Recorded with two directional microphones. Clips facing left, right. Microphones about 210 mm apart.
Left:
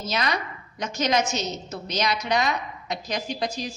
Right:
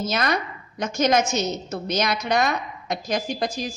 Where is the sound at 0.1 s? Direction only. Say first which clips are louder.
Right 3 dB; 50° right (ahead or behind).